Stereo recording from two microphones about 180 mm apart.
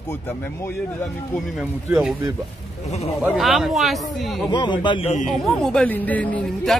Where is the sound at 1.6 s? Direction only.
5° right (ahead or behind).